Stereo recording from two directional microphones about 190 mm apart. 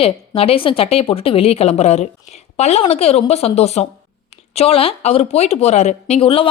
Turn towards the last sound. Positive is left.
turn(degrees=30)  # may be behind; listen again after turning